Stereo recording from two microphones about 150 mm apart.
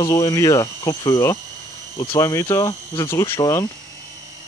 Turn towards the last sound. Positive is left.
turn(degrees=25)  # may be behind; listen again after turning